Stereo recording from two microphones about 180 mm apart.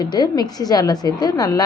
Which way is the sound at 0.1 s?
20° left (ahead or behind).